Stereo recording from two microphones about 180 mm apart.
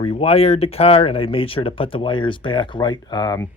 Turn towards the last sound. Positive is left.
turn(degrees=20)  # may be behind; listen again after turning